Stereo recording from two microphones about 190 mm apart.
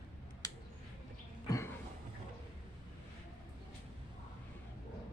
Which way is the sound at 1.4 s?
15° left (ahead or behind).